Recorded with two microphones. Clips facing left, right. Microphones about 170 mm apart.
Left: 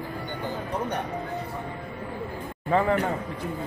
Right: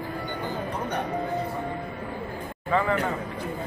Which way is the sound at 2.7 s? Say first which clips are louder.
Left 2 dB; 45° left (ahead or behind).